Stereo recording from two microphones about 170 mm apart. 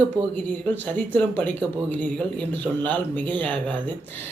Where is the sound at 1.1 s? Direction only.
10° left (ahead or behind).